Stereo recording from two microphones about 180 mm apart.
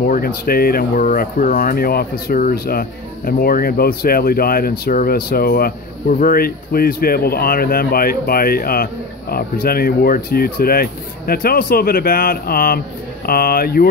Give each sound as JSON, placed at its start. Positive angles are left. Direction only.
{"t": 0.0, "sound": "speech", "side_deg": 55}